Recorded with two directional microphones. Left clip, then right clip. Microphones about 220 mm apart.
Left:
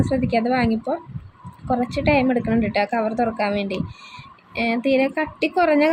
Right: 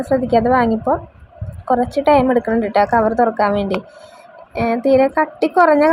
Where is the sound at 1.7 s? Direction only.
5° right (ahead or behind).